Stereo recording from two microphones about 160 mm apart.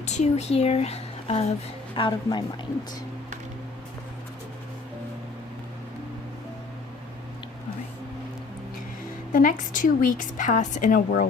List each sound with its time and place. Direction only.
0.0 s speech: 45° left (ahead or behind)
2.0 s speech: 30° left (ahead or behind)
9.3 s a woman's voice: 55° left (ahead or behind)